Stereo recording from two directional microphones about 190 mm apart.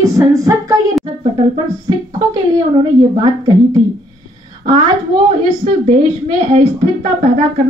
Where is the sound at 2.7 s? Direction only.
25° right (ahead or behind).